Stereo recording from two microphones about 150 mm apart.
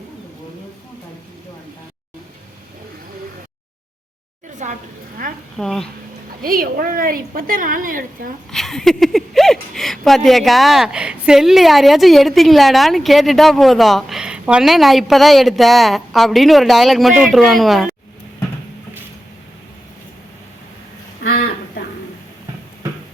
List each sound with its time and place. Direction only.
4.6 s a woman's voice: 60° right (ahead or behind)
5.5 s speech: 5° left (ahead or behind)
6.4 s a woman's voice: 75° right (ahead or behind)
8.4 s speech: centre (ahead or behind)
21.2 s a sound: 90° left